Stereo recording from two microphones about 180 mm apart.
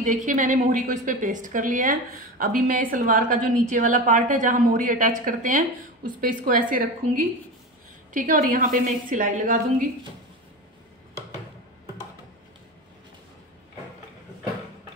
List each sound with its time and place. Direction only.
0.0 s a woman's voice: 45° right (ahead or behind)